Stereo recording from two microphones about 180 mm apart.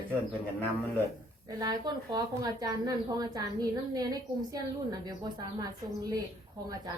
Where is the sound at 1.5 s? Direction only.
25° right (ahead or behind).